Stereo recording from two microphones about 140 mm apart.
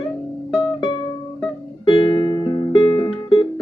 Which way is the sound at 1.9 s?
40° left (ahead or behind).